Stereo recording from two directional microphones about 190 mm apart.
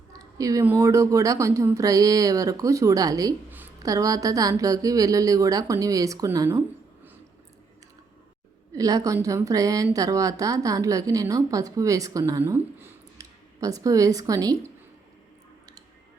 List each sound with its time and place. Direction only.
0.1 s a woman's voice: 20° right (ahead or behind)
8.7 s a woman's voice: 20° right (ahead or behind)